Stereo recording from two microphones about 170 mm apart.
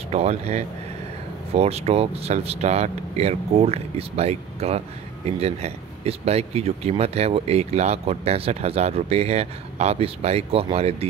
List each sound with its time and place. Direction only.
0.1 s speech: 40° right (ahead or behind)